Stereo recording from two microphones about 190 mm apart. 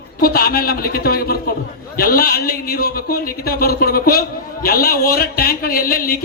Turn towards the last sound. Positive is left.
turn(degrees=50)  # may be behind; listen again after turning